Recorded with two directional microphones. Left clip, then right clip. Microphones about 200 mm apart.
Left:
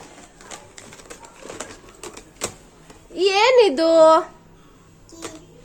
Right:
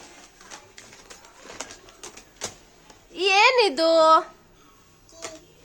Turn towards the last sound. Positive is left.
turn(degrees=0)  # may be behind; listen again after turning